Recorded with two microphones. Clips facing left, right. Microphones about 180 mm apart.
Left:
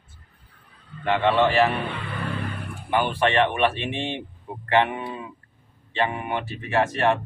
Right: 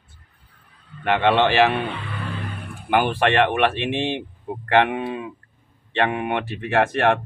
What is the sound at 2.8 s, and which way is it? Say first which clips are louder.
Speech: right 3 dB; 65° right (ahead or behind).